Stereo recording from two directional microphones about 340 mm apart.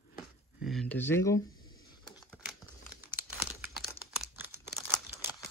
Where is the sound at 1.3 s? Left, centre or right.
Left.